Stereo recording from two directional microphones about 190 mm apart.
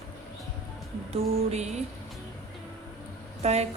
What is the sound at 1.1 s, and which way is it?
Speech, 35° right (ahead or behind).